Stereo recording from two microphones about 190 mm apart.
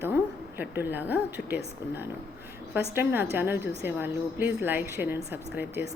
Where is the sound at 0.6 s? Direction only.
10° right (ahead or behind).